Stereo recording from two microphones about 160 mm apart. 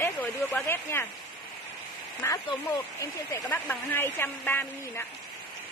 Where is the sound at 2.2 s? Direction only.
15° left (ahead or behind).